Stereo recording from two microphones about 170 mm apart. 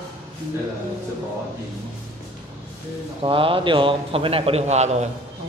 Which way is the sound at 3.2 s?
30° right (ahead or behind).